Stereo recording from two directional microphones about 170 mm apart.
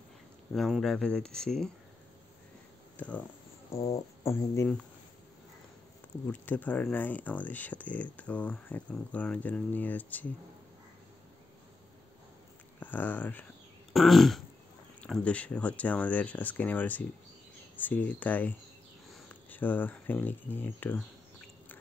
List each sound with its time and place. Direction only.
0.5 s speech: centre (ahead or behind)
3.0 s speech: 10° left (ahead or behind)
3.7 s music: 35° left (ahead or behind)
4.2 s speech: 15° left (ahead or behind)
6.2 s speech: 10° left (ahead or behind)
12.8 s speech: 10° left (ahead or behind)
19.5 s speech: 10° left (ahead or behind)